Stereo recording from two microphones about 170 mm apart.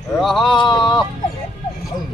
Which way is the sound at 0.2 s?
Centre (ahead or behind).